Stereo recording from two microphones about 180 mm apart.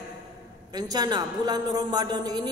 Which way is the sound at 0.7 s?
20° right (ahead or behind).